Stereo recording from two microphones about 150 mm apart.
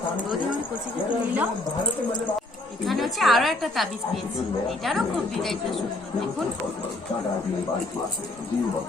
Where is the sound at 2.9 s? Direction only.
Centre (ahead or behind).